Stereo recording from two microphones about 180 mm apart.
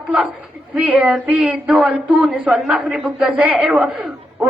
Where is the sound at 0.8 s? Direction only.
10° right (ahead or behind).